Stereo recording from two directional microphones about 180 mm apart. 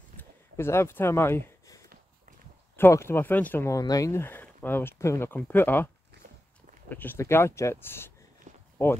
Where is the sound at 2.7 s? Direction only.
15° left (ahead or behind).